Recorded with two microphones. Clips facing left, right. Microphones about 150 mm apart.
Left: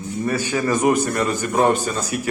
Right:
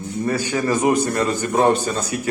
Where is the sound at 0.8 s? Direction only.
30° right (ahead or behind).